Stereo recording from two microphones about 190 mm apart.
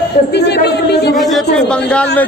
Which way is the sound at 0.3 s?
60° left (ahead or behind).